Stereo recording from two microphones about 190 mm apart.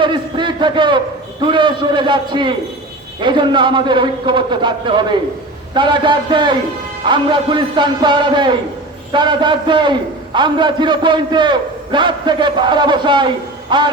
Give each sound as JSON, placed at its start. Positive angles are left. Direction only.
{"t": 0.0, "sound": "a man's voice", "side_deg": -25}